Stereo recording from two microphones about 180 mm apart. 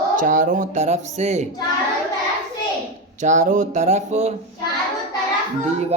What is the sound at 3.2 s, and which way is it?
Speech, 40° right (ahead or behind).